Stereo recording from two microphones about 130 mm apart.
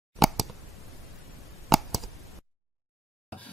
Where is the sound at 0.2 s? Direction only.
Centre (ahead or behind).